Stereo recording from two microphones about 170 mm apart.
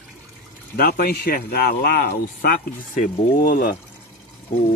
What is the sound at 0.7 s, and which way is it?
A man's voice, 60° left (ahead or behind).